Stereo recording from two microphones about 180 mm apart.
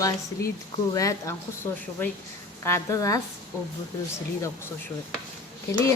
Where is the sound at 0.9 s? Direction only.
15° left (ahead or behind).